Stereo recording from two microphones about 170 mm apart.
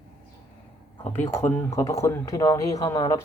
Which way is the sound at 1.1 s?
15° left (ahead or behind).